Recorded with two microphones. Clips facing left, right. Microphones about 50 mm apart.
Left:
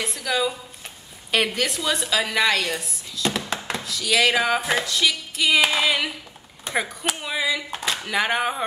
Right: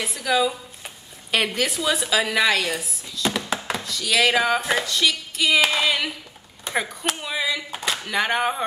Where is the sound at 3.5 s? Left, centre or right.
Centre.